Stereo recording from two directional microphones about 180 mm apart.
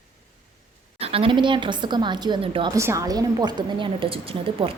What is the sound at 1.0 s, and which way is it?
A woman's voice, 30° right (ahead or behind).